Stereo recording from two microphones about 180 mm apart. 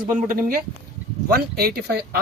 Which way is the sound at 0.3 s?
55° right (ahead or behind).